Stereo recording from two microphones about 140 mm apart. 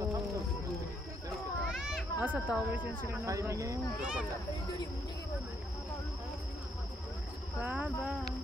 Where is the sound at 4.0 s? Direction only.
5° right (ahead or behind).